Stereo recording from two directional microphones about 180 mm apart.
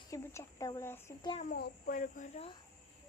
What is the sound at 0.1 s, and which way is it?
Speech, 15° left (ahead or behind).